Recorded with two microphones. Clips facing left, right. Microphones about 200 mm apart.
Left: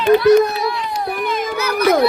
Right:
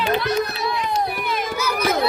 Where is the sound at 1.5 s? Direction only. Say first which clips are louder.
Left 8 dB; 65° left (ahead or behind).